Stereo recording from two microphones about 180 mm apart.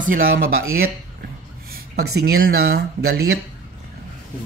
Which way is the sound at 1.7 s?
60° right (ahead or behind).